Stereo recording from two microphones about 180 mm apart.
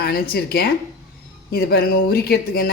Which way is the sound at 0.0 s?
60° left (ahead or behind).